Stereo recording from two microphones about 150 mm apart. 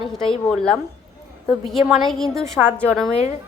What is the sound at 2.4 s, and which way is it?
Speech, 15° right (ahead or behind).